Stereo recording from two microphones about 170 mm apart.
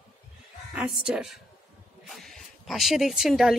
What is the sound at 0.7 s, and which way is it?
Speech, 5° right (ahead or behind).